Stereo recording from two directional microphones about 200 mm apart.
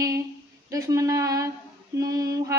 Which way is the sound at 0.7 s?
15° right (ahead or behind).